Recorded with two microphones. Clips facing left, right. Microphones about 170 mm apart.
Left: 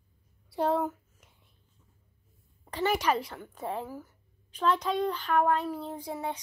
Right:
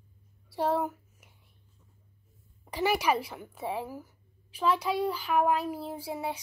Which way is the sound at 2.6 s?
5° right (ahead or behind).